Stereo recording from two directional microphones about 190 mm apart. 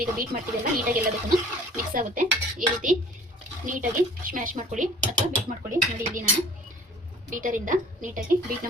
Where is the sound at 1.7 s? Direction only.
45° right (ahead or behind).